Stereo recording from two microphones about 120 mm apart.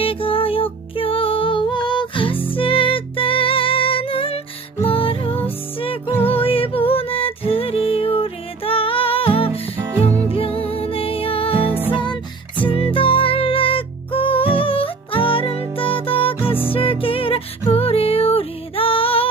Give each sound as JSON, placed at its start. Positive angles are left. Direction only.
{"t": 0.0, "sound": "music", "side_deg": 50}
{"t": 5.3, "sound": "music", "side_deg": 15}
{"t": 5.7, "sound": "music", "side_deg": 50}
{"t": 9.7, "sound": "music", "side_deg": -20}
{"t": 10.2, "sound": "music", "side_deg": 50}